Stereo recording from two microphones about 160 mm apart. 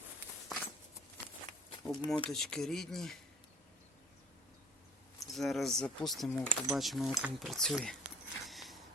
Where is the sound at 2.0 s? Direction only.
30° left (ahead or behind).